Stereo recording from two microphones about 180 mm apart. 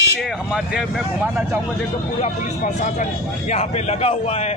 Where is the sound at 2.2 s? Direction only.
45° left (ahead or behind).